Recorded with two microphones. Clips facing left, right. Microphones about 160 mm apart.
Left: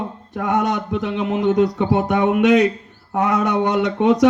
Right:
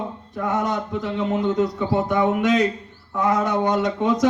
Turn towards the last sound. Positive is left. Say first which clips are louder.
# left 4 dB
turn(degrees=70)  # may be behind; listen again after turning